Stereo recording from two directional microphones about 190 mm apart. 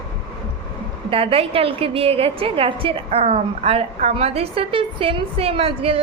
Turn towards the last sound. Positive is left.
turn(degrees=-30)  # may be behind; listen again after turning